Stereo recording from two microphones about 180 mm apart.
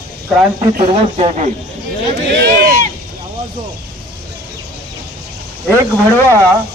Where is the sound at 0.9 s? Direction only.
35° right (ahead or behind).